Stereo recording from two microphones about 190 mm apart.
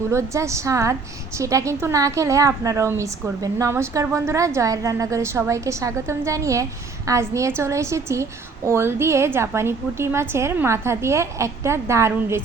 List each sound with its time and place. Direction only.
0.1 s a woman's voice: 15° right (ahead or behind)